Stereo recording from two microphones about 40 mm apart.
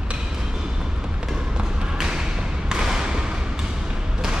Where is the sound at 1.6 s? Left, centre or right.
Centre.